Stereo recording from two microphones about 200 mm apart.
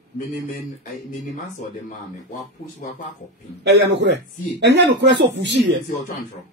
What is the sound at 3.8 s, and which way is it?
Speech, 60° right (ahead or behind).